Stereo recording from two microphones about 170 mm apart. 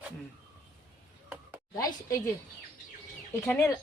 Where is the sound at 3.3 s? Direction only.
15° left (ahead or behind).